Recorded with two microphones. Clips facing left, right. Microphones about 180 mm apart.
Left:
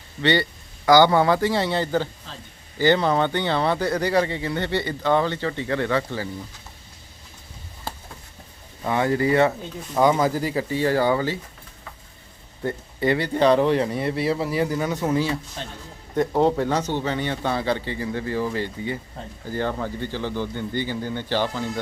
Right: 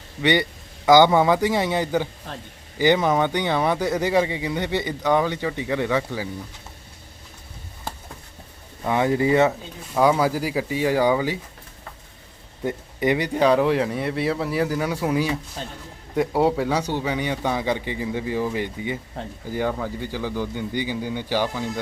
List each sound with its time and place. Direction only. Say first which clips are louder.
0.2 s speech: right 1 dB; 15° right (ahead or behind)
2.3 s a man's voice: right 5 dB; 55° right (ahead or behind)
2.7 s speech: even; 15° right (ahead or behind)
8.9 s speech: right 1 dB; 15° right (ahead or behind)
9.5 s speech: left 1 dB; 5° right (ahead or behind)
12.6 s speech: even; 15° right (ahead or behind)